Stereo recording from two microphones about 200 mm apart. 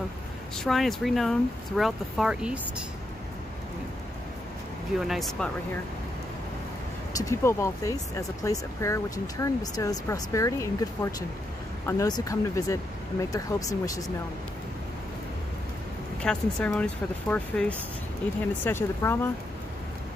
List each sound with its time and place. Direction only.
0.7 s speech: centre (ahead or behind)
4.9 s speech: centre (ahead or behind)
7.2 s speech: 15° left (ahead or behind)
16.2 s speech: 5° left (ahead or behind)